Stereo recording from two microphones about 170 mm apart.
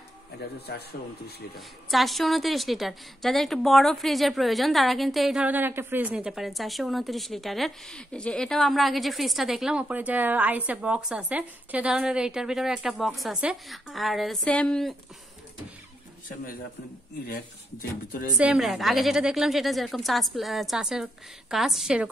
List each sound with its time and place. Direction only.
0.7 s speech: 70° left (ahead or behind)
1.9 s a woman's voice: centre (ahead or behind)
18.4 s a woman's voice: centre (ahead or behind)